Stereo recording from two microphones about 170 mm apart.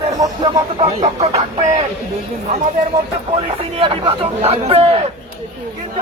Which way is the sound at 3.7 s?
30° right (ahead or behind).